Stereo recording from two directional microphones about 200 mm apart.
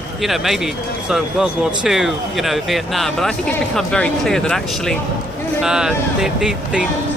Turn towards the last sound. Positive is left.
turn(degrees=0)  # may be behind; listen again after turning